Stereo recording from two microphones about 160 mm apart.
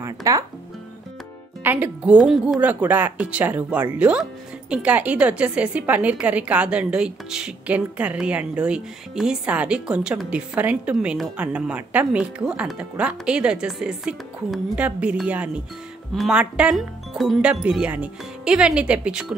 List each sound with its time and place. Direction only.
0.0 s speech: 20° right (ahead or behind)
1.6 s speech: 10° right (ahead or behind)